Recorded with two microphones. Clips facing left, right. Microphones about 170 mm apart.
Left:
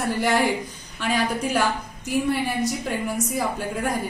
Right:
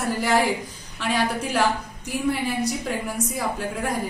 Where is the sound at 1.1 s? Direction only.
90° right.